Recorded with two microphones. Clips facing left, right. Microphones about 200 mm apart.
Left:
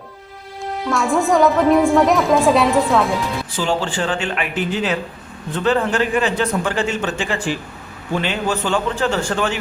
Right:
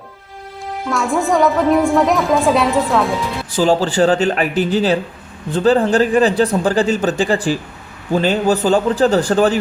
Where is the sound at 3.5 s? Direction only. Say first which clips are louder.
Right 8 dB; 40° right (ahead or behind).